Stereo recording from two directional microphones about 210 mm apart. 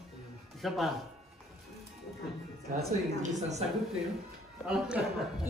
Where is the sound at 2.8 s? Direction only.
35° right (ahead or behind).